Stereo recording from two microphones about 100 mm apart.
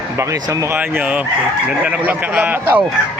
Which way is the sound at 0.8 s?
15° right (ahead or behind).